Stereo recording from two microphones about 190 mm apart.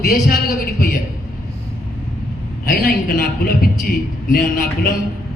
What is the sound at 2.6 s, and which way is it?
A man's voice, 50° left (ahead or behind).